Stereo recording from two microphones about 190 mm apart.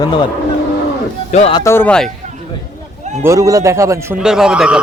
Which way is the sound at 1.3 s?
35° left (ahead or behind).